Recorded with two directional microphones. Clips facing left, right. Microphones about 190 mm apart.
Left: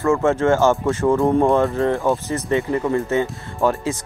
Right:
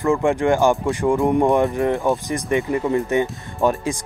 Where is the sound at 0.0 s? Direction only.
15° right (ahead or behind).